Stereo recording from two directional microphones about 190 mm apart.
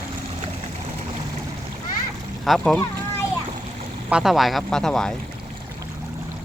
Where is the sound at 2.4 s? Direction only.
Centre (ahead or behind).